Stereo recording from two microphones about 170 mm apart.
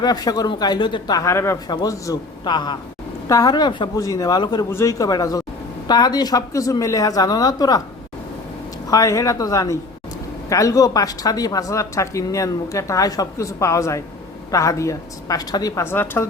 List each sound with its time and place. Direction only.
0.0 s speech: 25° left (ahead or behind)
8.9 s speech: 20° left (ahead or behind)